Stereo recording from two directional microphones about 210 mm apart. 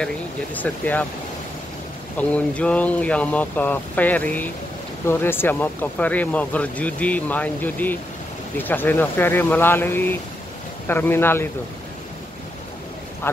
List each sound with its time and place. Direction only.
0.6 s speech: 10° left (ahead or behind)
2.1 s speech: 5° left (ahead or behind)